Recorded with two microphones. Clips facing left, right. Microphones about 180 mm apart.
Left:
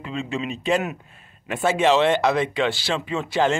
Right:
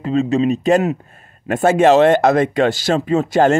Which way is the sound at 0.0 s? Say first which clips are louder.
Right 12 dB; 40° right (ahead or behind).